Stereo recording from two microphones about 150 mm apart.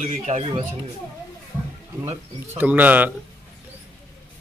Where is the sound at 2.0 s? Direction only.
15° right (ahead or behind).